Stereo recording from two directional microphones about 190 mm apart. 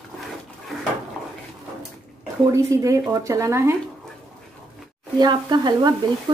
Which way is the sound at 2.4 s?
15° right (ahead or behind).